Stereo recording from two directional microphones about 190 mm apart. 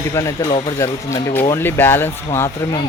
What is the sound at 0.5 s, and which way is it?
Speech, 25° left (ahead or behind).